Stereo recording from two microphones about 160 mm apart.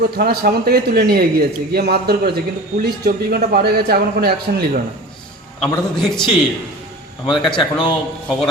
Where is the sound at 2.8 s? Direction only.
70° right (ahead or behind).